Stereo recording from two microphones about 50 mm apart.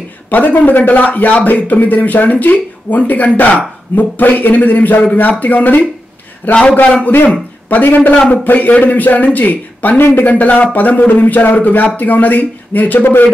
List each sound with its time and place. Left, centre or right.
0.3 s a man's voice: left
7.7 s a man's voice: left